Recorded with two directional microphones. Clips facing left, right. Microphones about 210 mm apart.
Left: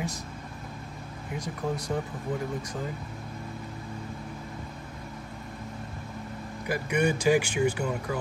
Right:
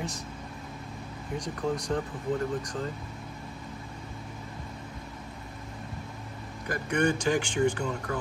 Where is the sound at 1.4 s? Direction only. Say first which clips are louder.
Right 1 dB; 5° left (ahead or behind).